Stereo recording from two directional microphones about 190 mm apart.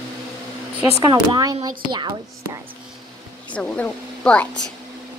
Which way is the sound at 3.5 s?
5° left (ahead or behind).